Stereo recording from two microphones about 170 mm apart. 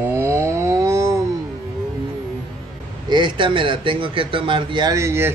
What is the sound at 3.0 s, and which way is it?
Speech, 25° right (ahead or behind).